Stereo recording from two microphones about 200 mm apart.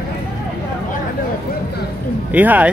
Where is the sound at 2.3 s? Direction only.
10° right (ahead or behind).